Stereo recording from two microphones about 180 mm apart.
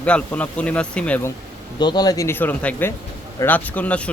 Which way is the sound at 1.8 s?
25° left (ahead or behind).